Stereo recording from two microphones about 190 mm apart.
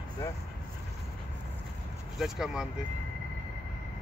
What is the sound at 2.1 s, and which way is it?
Speech, centre (ahead or behind).